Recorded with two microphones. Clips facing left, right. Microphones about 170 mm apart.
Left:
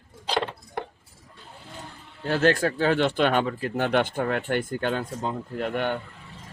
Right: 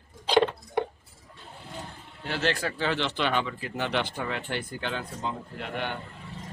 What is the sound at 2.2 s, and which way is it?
Speech, 45° left (ahead or behind).